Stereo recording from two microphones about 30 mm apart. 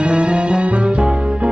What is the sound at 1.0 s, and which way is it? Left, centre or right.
Music, right.